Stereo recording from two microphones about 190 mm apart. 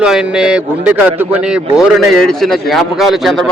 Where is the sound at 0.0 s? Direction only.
5° right (ahead or behind).